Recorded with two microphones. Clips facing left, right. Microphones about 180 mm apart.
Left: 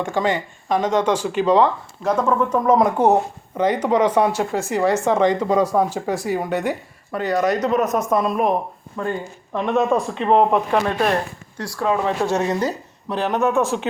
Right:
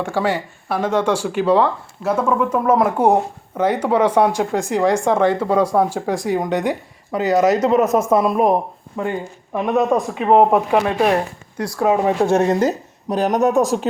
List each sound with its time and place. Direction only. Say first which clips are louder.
0.0 s speech: right 1 dB; 10° right (ahead or behind); by 8.2 s 25° right (ahead or behind)
8.2 s speech: right 4 dB; 15° right (ahead or behind)
12.2 s speech: right 5 dB; 50° right (ahead or behind)